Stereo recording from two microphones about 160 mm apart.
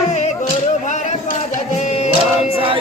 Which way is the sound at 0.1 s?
45° left (ahead or behind).